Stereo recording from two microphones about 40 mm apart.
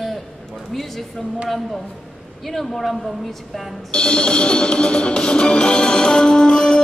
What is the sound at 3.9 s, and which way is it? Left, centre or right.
Music, left.